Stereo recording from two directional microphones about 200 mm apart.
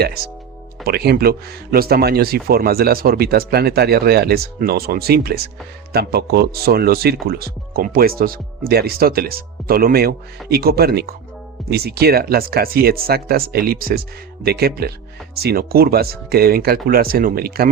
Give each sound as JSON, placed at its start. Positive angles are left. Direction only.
{"t": 0.9, "sound": "speech", "side_deg": -50}